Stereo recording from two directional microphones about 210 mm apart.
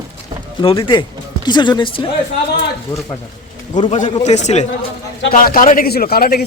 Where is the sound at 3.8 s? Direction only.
35° left (ahead or behind).